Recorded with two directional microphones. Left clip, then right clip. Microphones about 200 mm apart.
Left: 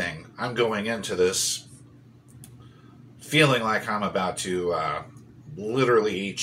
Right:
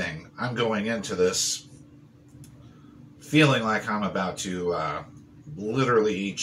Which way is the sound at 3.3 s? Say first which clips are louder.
Left 1 dB; 5° right (ahead or behind).